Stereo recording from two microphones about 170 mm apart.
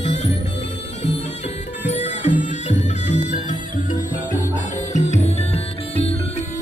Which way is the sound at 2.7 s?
45° left (ahead or behind).